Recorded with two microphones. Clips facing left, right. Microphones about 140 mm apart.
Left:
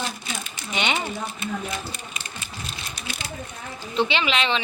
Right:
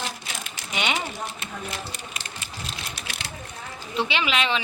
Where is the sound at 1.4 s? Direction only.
85° right.